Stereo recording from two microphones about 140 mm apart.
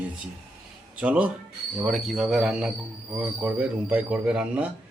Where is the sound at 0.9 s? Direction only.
10° right (ahead or behind).